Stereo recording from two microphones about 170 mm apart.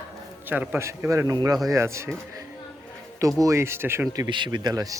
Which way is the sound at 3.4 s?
15° right (ahead or behind).